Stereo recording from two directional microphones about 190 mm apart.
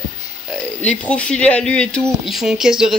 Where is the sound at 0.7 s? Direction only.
5° left (ahead or behind).